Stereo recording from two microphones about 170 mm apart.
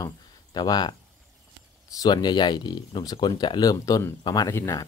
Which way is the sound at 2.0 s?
25° left (ahead or behind).